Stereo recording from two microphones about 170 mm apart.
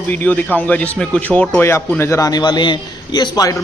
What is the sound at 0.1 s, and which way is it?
Speech, 10° left (ahead or behind).